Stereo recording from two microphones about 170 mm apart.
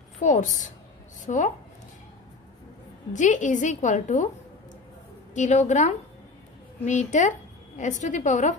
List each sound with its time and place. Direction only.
0.2 s a woman's voice: 45° left (ahead or behind)
3.1 s a woman's voice: 45° left (ahead or behind)
5.3 s a woman's voice: 45° left (ahead or behind)